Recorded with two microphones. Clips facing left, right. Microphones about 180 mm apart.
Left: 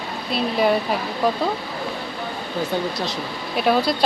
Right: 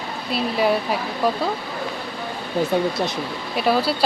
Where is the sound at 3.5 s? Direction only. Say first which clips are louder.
Left 1 dB; centre (ahead or behind).